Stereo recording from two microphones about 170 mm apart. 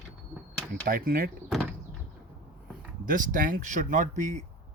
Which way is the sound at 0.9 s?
60° right (ahead or behind).